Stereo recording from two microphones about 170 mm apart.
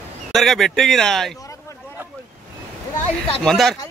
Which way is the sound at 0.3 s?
Centre (ahead or behind).